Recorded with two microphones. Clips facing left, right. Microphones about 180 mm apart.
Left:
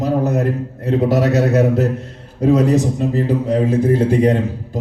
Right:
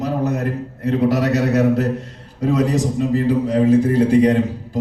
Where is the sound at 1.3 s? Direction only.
50° left (ahead or behind).